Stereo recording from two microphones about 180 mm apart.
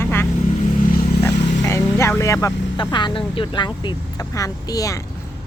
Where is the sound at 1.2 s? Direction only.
15° left (ahead or behind).